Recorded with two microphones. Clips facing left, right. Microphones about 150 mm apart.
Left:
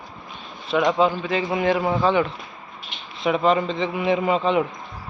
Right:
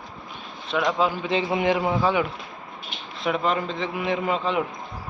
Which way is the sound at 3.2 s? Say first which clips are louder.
Left 5 dB; centre (ahead or behind).